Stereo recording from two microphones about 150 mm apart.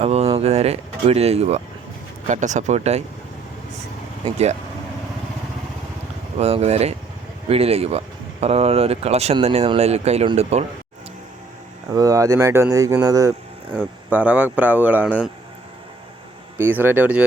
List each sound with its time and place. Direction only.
0.0 s speech: 45° right (ahead or behind)
6.3 s speech: 45° right (ahead or behind)
11.9 s speech: 25° right (ahead or behind)
13.7 s speech: 10° right (ahead or behind)
16.6 s speech: 15° right (ahead or behind)